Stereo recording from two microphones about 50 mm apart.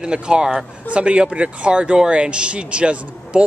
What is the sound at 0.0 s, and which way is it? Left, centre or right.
Speech, centre.